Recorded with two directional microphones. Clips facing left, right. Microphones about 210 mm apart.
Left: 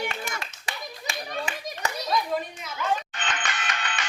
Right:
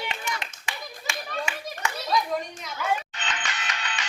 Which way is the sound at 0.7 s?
35° left (ahead or behind).